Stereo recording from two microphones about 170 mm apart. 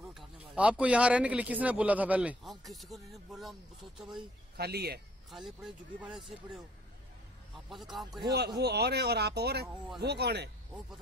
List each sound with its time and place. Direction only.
0.0 s speech: 5° right (ahead or behind)
4.6 s speech: 70° right (ahead or behind)
5.3 s speech: centre (ahead or behind)
7.9 s speech: centre (ahead or behind)
8.3 s speech: 70° right (ahead or behind)